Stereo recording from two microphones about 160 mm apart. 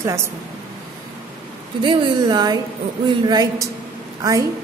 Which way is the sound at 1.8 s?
30° right (ahead or behind).